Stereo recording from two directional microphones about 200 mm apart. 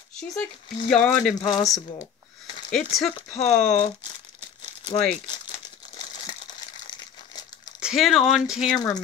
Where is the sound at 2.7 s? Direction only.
Centre (ahead or behind).